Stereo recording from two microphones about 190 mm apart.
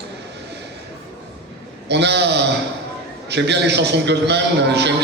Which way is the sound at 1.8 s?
65° right (ahead or behind).